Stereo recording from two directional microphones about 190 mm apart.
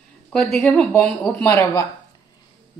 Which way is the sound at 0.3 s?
Centre (ahead or behind).